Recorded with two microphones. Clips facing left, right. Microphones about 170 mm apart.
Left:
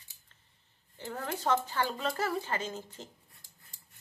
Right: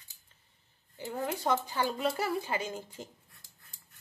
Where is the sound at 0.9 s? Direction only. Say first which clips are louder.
Right 3 dB; 10° right (ahead or behind).